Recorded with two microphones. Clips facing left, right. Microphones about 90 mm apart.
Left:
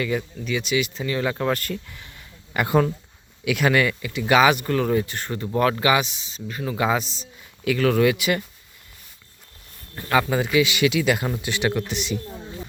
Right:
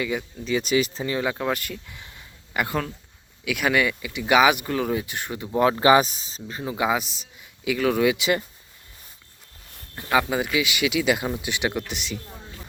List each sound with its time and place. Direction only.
0.0 s speech: 15° right (ahead or behind)
0.4 s speech: 35° right (ahead or behind)
1.1 s speech: 15° right (ahead or behind)
2.6 s speech: 10° left (ahead or behind)
3.4 s speech: 5° right (ahead or behind)
5.8 s speech: 35° right (ahead or behind)
6.5 s a man's voice: 20° right (ahead or behind)
8.1 s speech: 20° right (ahead or behind)
9.9 s speech: 10° right (ahead or behind)